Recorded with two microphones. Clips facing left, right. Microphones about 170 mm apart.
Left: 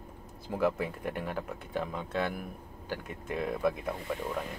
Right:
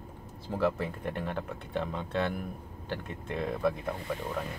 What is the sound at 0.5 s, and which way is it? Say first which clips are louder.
A man's voice: even; 10° left (ahead or behind).